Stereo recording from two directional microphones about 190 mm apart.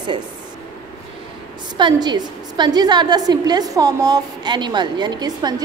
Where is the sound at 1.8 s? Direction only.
25° right (ahead or behind).